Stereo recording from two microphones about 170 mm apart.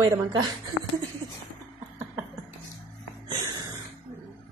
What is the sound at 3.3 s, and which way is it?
Music, 25° right (ahead or behind).